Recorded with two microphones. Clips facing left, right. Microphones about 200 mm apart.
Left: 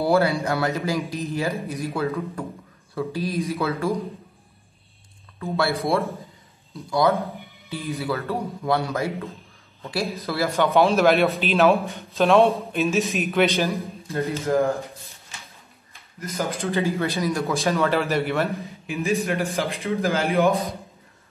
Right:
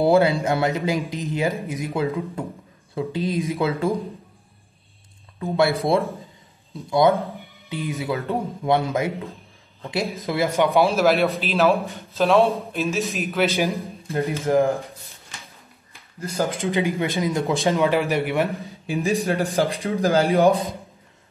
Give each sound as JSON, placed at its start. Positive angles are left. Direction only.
{"t": 0.0, "sound": "speech", "side_deg": -20}
{"t": 5.4, "sound": "speech", "side_deg": -15}
{"t": 10.9, "sound": "a man's voice", "side_deg": 0}
{"t": 13.6, "sound": "speech", "side_deg": -15}
{"t": 16.2, "sound": "speech", "side_deg": -30}
{"t": 16.6, "sound": "speech", "side_deg": -15}
{"t": 18.6, "sound": "speech", "side_deg": -30}